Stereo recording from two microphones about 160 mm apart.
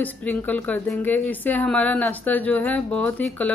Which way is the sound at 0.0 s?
10° left (ahead or behind).